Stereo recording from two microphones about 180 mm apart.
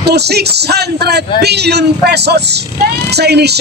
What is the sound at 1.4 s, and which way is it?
Speech, 65° right (ahead or behind).